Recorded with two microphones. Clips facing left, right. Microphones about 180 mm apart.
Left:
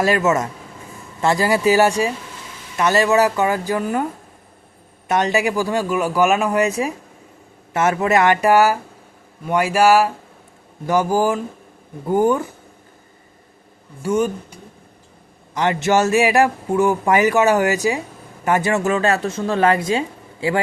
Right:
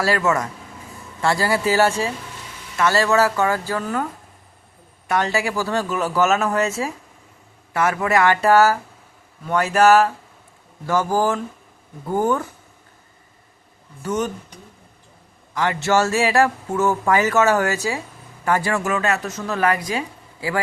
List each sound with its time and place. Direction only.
0.0 s speech: 20° left (ahead or behind)
5.0 s speech: 20° left (ahead or behind)
14.0 s speech: 10° left (ahead or behind)
15.5 s speech: 20° left (ahead or behind)